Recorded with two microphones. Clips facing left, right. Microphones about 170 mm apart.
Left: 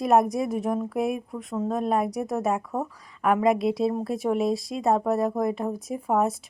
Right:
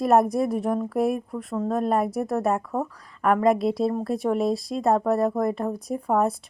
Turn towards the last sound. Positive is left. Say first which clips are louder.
# right 1 dB
turn(degrees=0)  # may be behind; listen again after turning